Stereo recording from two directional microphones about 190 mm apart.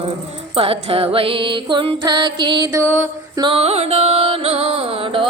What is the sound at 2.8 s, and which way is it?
Music, 10° right (ahead or behind).